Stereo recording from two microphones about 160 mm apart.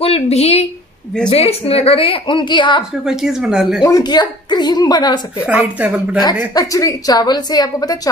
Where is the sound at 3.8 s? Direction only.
25° left (ahead or behind).